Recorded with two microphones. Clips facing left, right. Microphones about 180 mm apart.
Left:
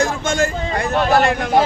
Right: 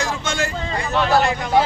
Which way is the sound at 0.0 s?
50° left (ahead or behind).